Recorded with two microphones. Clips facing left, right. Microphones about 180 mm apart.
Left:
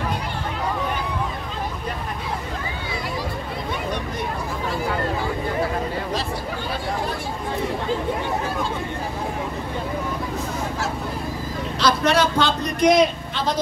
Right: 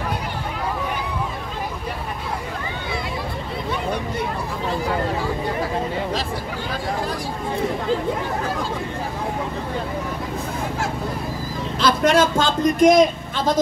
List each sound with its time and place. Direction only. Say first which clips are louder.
11.8 s vehicle: right 2 dB; 50° right (ahead or behind)